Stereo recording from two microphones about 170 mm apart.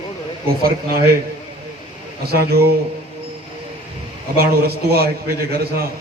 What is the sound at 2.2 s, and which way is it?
Speech, 65° right (ahead or behind).